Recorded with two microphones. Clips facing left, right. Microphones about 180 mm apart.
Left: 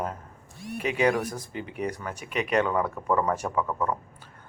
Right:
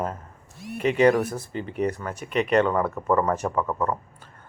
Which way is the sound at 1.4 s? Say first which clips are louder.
Right 5 dB; 10° left (ahead or behind).